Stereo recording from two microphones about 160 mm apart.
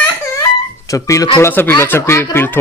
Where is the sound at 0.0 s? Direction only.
20° left (ahead or behind).